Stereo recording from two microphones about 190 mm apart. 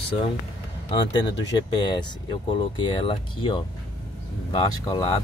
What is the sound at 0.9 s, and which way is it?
Speech, 25° left (ahead or behind).